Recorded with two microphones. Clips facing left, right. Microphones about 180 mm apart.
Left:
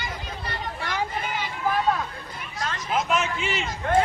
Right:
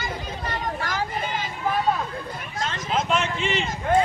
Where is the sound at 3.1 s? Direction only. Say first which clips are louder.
Right 1 dB; 5° left (ahead or behind).